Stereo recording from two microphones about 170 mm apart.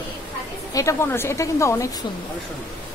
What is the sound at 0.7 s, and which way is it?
A woman's voice, 20° left (ahead or behind).